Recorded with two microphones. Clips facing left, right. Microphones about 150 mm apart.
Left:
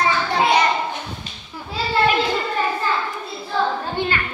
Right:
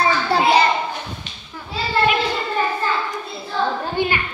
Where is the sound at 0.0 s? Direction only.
30° right (ahead or behind).